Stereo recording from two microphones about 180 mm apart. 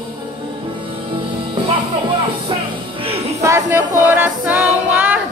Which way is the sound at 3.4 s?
15° right (ahead or behind).